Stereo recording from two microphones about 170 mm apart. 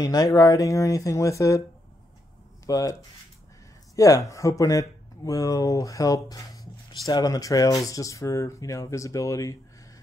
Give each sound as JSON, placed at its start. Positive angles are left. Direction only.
{"t": 0.0, "sound": "speech", "side_deg": 20}
{"t": 2.6, "sound": "speech", "side_deg": 20}